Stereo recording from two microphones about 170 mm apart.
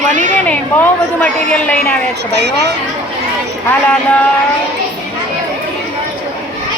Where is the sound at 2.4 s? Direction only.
85° right.